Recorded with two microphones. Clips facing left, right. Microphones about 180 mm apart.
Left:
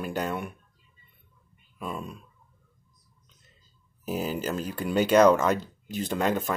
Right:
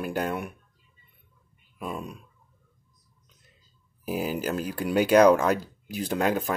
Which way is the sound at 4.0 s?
5° right (ahead or behind).